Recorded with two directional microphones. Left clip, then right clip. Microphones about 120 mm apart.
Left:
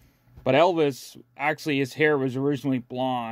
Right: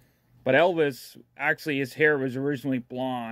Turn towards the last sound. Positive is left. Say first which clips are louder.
# left 3 dB
turn(degrees=15)  # may be behind; listen again after turning